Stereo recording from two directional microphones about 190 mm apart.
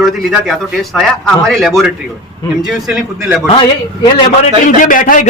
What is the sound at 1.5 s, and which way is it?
Speech, centre (ahead or behind).